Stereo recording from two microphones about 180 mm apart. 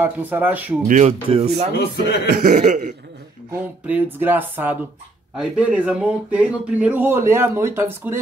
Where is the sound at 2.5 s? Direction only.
40° right (ahead or behind).